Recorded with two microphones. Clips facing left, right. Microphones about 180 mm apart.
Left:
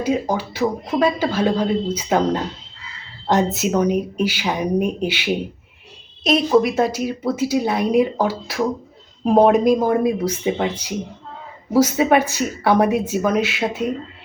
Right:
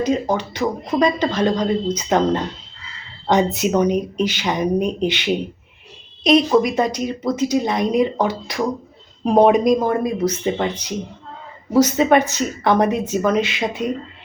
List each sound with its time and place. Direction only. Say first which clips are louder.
0.0 s speech: right 1 dB; 10° left (ahead or behind)